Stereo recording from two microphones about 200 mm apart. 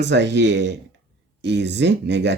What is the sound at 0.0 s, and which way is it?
Speech, 60° right (ahead or behind).